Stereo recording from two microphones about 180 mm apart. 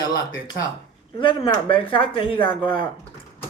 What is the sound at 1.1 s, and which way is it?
Speech, 30° left (ahead or behind).